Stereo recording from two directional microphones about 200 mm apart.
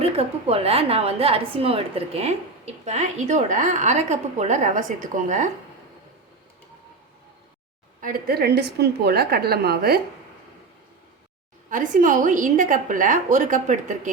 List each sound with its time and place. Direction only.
0.2 s a woman's voice: 30° right (ahead or behind)
8.0 s a woman's voice: 50° right (ahead or behind)
11.7 s a woman's voice: 40° right (ahead or behind)